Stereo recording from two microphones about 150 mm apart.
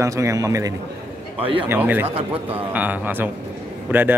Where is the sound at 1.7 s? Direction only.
15° right (ahead or behind).